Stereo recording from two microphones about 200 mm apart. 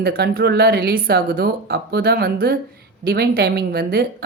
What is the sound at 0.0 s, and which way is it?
Speech, 50° right (ahead or behind).